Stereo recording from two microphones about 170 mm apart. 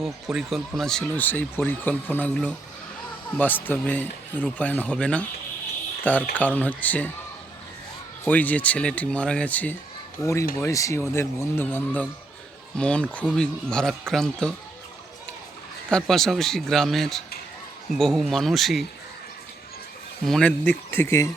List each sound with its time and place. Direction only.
0.0 s speech: 5° right (ahead or behind)
6.3 s speech: 10° left (ahead or behind)
8.2 s speech: 10° left (ahead or behind)
15.9 s speech: 5° left (ahead or behind)
20.2 s speech: 5° left (ahead or behind)